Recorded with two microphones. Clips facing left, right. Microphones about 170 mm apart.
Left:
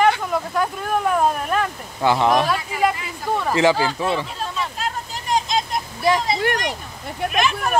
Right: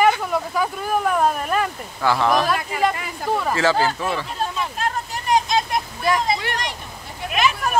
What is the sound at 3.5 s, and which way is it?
Speech, 15° left (ahead or behind).